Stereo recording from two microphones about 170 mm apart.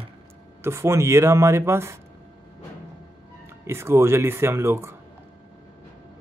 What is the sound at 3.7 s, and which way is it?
A man's voice, 15° right (ahead or behind).